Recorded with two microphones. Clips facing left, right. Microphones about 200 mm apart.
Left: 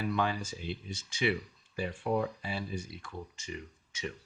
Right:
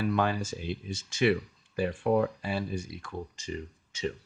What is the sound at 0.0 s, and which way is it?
Speech, 50° right (ahead or behind).